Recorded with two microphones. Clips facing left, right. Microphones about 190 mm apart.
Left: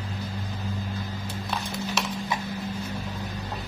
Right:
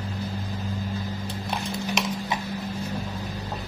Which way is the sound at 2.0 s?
15° right (ahead or behind).